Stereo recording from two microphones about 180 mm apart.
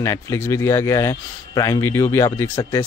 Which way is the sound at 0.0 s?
15° left (ahead or behind).